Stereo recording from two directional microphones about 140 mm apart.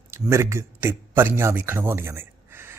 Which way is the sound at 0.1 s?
20° right (ahead or behind).